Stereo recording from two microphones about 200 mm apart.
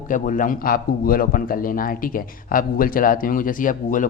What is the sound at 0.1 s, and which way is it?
A man's voice, 40° left (ahead or behind).